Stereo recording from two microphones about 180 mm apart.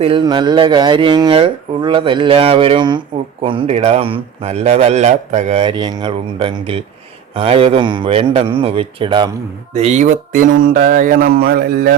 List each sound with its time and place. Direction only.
0.0 s a man's voice: 25° right (ahead or behind)
9.7 s speech: 40° right (ahead or behind); by 11.9 s 60° right (ahead or behind)